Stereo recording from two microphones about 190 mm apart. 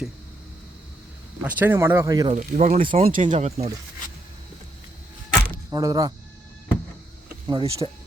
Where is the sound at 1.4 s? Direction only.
10° right (ahead or behind).